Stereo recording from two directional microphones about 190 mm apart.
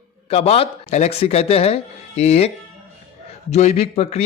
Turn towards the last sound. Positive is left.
turn(degrees=35)  # may be behind; listen again after turning